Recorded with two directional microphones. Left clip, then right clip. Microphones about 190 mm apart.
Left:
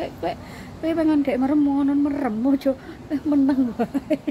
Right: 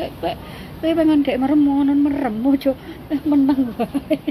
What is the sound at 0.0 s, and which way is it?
A woman's voice, 35° left (ahead or behind).